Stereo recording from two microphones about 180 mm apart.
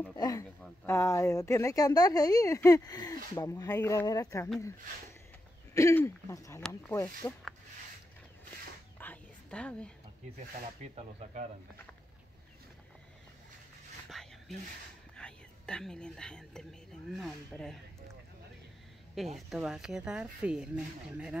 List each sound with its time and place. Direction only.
0.1 s speech: 20° left (ahead or behind)
5.8 s speech: 15° left (ahead or behind)
8.9 s whispering: 10° left (ahead or behind)
10.8 s speech: 35° right (ahead or behind)
14.2 s whispering: centre (ahead or behind)
15.1 s speech: 5° left (ahead or behind)
19.1 s speech: centre (ahead or behind)